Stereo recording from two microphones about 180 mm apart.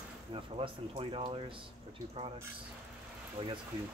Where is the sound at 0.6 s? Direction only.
30° right (ahead or behind).